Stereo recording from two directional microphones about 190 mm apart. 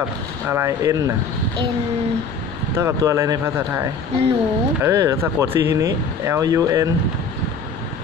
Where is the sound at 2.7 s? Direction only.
15° right (ahead or behind).